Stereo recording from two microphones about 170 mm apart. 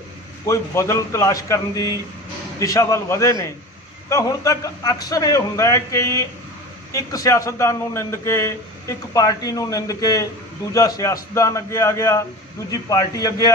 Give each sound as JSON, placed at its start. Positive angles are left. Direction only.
{"t": 0.5, "sound": "a man's voice", "side_deg": 15}